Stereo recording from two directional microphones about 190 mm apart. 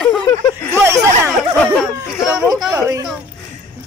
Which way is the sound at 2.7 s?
15° right (ahead or behind).